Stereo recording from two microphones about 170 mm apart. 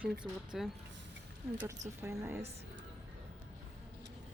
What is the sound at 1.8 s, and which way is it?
Speech, 15° right (ahead or behind).